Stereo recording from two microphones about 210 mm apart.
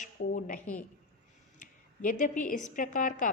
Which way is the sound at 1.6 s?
40° left (ahead or behind).